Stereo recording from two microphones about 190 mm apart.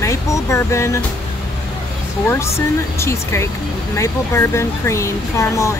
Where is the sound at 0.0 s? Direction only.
15° left (ahead or behind).